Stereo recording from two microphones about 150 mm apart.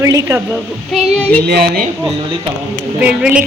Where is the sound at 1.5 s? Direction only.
80° right.